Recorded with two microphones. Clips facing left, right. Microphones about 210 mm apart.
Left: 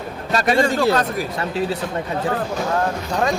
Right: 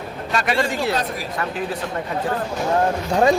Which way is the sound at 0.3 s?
40° left (ahead or behind).